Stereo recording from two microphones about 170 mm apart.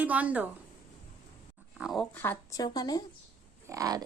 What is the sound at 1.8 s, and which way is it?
Speech, centre (ahead or behind).